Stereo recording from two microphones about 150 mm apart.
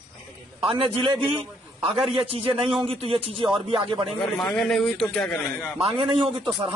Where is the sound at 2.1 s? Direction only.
40° right (ahead or behind).